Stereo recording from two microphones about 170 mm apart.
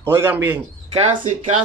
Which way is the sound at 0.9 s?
45° right (ahead or behind).